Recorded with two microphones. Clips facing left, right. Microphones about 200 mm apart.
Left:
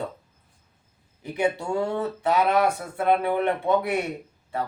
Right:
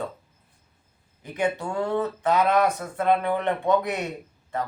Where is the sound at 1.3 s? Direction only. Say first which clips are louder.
Left 2 dB; 10° left (ahead or behind).